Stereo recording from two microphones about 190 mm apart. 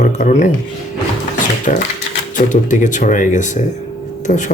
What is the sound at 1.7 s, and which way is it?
Speech, 40° left (ahead or behind).